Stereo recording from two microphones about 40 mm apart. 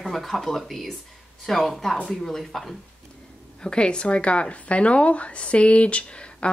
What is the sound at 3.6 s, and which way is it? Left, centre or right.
A woman's voice, left.